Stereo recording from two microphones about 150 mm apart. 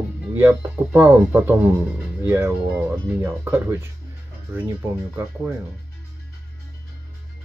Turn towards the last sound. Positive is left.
turn(degrees=-15)  # may be behind; listen again after turning